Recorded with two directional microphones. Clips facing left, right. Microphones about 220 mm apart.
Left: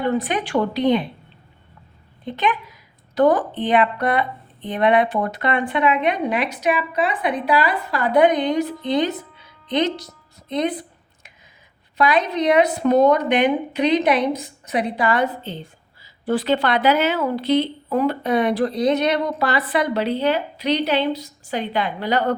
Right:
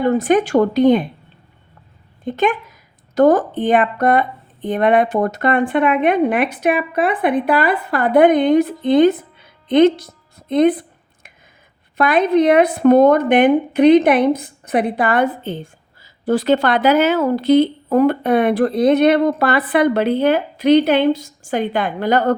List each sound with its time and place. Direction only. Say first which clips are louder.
0.0 s speech: right 7 dB; 45° right (ahead or behind)
2.2 s a woman's voice: right 5 dB; 45° right (ahead or behind)
10.5 s a sound: right 9 dB; 55° right (ahead or behind)
11.9 s speech: right 6 dB; 55° right (ahead or behind)